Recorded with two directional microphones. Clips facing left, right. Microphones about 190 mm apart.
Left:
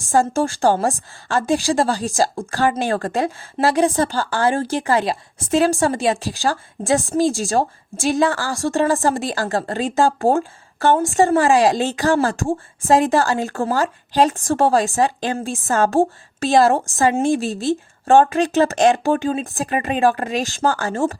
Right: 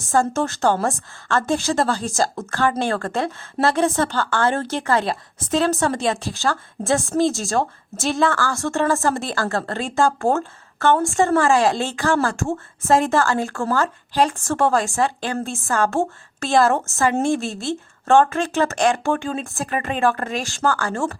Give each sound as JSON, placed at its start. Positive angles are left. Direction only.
{"t": 0.1, "sound": "a woman's voice", "side_deg": 15}